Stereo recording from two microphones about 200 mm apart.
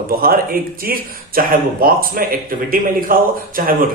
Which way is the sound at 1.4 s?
45° right (ahead or behind).